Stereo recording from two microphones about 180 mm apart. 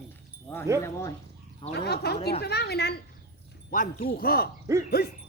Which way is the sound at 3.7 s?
50° left (ahead or behind).